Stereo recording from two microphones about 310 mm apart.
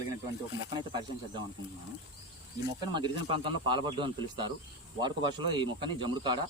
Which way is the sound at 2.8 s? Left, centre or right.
Centre.